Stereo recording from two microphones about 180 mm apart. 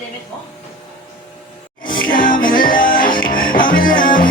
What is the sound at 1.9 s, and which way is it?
Music, 50° left (ahead or behind).